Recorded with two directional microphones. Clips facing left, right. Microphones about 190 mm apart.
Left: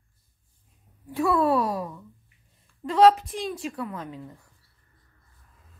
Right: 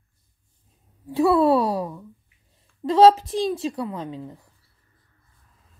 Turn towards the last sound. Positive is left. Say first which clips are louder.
# right 5 dB
turn(degrees=-25)  # may be behind; listen again after turning